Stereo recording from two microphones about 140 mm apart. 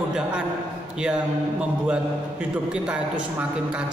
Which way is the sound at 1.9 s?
5° right (ahead or behind).